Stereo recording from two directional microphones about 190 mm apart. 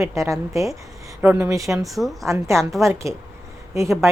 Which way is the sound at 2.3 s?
15° right (ahead or behind).